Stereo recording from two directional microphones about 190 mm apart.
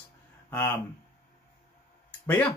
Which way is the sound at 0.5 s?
10° left (ahead or behind).